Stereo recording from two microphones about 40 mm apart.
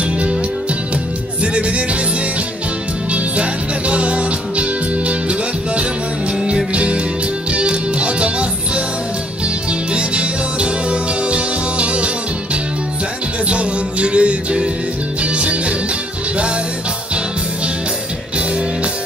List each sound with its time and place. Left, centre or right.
1.4 s music: right
3.1 s music: right
13.5 s music: right